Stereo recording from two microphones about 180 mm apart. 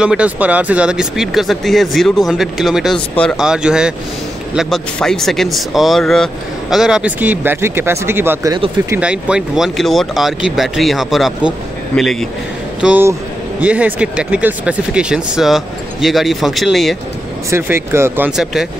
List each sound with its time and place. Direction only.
0.0 s speech: 5° right (ahead or behind)
12.8 s speech: 10° right (ahead or behind)
17.5 s speech: 15° right (ahead or behind)